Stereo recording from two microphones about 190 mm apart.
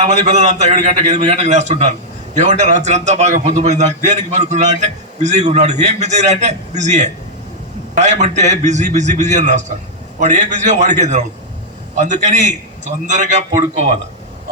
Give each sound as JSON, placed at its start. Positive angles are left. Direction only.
{"t": 0.0, "sound": "a man's voice", "side_deg": -35}